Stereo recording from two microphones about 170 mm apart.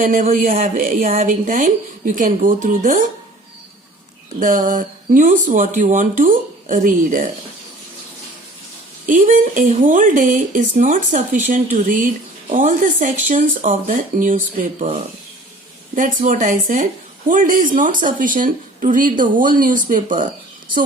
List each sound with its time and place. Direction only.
0.0 s speech: 50° right (ahead or behind)
4.4 s speech: 50° right (ahead or behind)
9.0 s speech: 50° right (ahead or behind)